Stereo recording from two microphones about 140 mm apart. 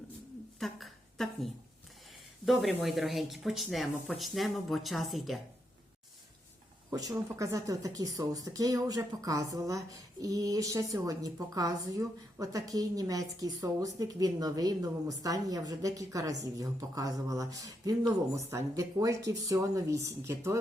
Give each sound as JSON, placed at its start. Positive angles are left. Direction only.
{"t": 0.6, "sound": "a sound", "side_deg": 0}
{"t": 2.0, "sound": "speech", "side_deg": 0}
{"t": 6.9, "sound": "speech", "side_deg": -25}